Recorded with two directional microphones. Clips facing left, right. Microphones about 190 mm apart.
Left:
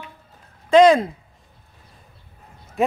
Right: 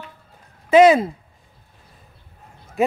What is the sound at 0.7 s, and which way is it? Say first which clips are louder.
Speech: right 1 dB; 5° right (ahead or behind).